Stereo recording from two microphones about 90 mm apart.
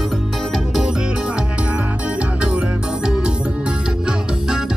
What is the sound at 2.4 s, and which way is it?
Music, 10° right (ahead or behind).